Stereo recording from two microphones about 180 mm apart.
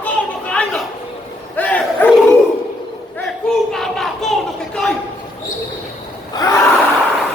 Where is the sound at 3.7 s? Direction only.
Centre (ahead or behind).